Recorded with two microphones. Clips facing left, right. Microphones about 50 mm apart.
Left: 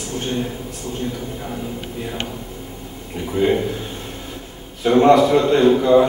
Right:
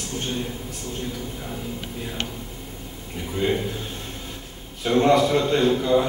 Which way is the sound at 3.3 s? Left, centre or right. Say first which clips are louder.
Left 6 dB; centre.